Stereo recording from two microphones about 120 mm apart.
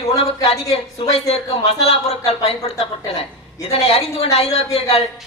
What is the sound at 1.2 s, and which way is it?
Speech, 55° left (ahead or behind).